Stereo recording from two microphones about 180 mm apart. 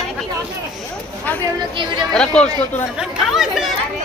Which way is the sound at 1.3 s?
10° left (ahead or behind).